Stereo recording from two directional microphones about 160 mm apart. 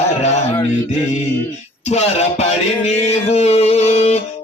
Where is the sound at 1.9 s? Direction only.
40° left (ahead or behind).